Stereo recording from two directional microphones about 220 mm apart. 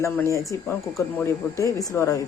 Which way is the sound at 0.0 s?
15° left (ahead or behind).